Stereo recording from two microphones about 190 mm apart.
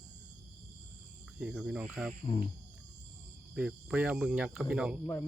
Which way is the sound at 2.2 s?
35° left (ahead or behind).